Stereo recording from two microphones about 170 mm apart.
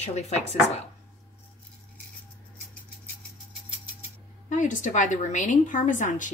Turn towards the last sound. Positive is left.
turn(degrees=50)  # may be behind; listen again after turning